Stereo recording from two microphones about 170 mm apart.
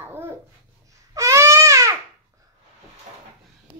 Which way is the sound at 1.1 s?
20° right (ahead or behind).